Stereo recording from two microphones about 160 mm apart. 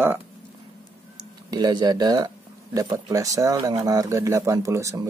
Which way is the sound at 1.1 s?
25° right (ahead or behind).